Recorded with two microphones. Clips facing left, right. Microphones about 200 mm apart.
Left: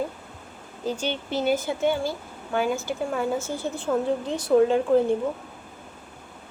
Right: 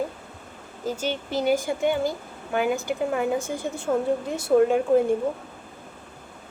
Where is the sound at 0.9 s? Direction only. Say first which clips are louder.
Even; 10° right (ahead or behind).